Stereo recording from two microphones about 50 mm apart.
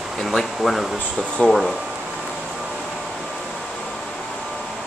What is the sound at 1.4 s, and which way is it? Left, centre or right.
Speech, centre.